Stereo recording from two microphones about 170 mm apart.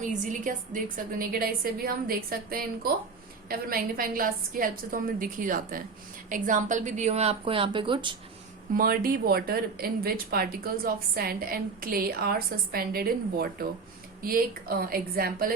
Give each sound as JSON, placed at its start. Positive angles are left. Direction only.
{"t": 0.0, "sound": "a woman's voice", "side_deg": -50}
{"t": 8.7, "sound": "speech", "side_deg": -55}